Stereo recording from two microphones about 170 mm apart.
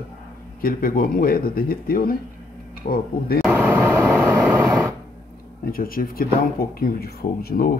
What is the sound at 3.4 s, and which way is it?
Vehicle, 10° right (ahead or behind).